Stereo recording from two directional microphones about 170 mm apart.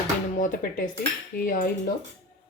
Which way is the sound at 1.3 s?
55° left (ahead or behind).